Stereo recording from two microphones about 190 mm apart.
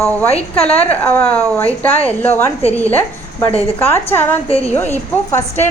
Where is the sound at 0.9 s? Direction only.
10° left (ahead or behind).